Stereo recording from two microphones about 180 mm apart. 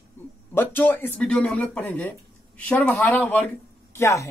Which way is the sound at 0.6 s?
10° left (ahead or behind).